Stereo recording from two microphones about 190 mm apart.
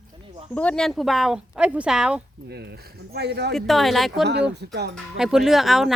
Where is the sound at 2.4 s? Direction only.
60° right (ahead or behind).